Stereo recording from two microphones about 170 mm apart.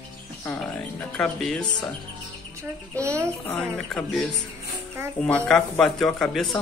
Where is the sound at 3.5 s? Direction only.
5° left (ahead or behind).